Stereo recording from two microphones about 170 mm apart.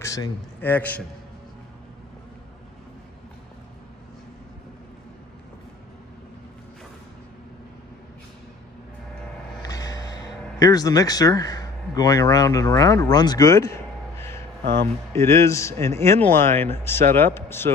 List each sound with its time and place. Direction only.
0.0 s speech: 20° left (ahead or behind)
9.6 s a sound: 20° left (ahead or behind)
10.6 s speech: 20° left (ahead or behind)
14.6 s speech: 80° right
15.1 s speech: 15° left (ahead or behind)